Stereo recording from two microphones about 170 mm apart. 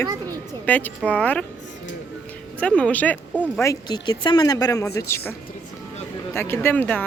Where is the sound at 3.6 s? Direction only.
25° left (ahead or behind).